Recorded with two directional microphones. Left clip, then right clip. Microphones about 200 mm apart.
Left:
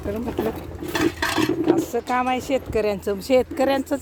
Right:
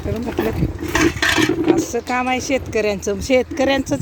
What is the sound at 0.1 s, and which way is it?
Speech, 10° left (ahead or behind).